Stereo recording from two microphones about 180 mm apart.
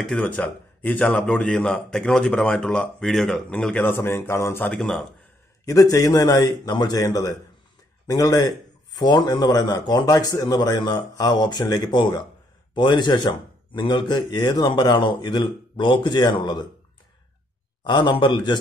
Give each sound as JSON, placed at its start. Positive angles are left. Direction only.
{"t": 0.0, "sound": "a man's voice", "side_deg": 5}
{"t": 5.7, "sound": "speech", "side_deg": 20}
{"t": 17.8, "sound": "speech", "side_deg": 25}